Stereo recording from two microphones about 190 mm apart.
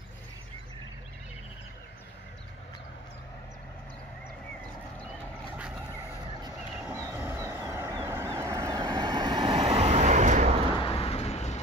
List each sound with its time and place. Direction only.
6.9 s vehicle: 15° right (ahead or behind); by 10.5 s 40° right (ahead or behind)
10.8 s vehicle: 30° left (ahead or behind)